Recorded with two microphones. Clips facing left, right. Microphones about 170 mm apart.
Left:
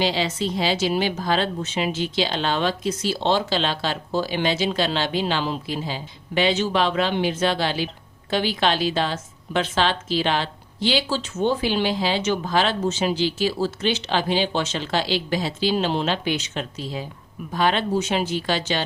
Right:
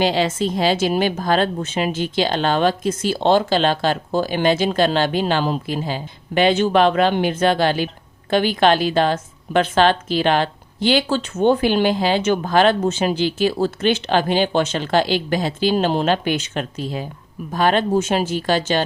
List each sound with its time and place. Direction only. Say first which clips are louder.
0.0 s a woman's voice: right 5 dB; 50° right (ahead or behind)